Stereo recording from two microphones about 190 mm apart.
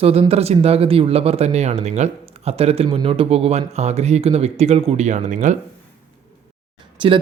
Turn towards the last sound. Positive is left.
turn(degrees=-30)  # may be behind; listen again after turning